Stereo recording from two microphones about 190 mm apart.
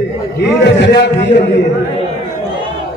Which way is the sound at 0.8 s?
65° left (ahead or behind).